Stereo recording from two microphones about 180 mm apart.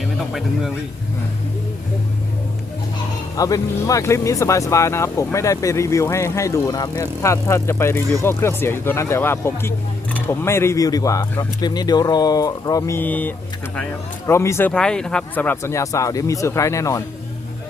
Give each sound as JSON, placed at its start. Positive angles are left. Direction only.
{"t": 3.3, "sound": "speech", "side_deg": 20}